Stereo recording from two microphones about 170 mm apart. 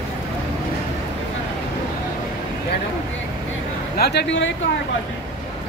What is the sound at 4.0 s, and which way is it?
Speech, 85° left.